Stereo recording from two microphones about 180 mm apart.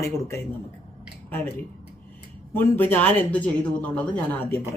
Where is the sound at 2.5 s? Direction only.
10° left (ahead or behind).